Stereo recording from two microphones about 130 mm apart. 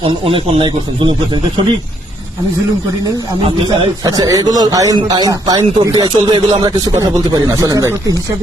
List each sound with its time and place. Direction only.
0.0 s a man's voice: 45° right (ahead or behind)
4.0 s a man's voice: 30° right (ahead or behind)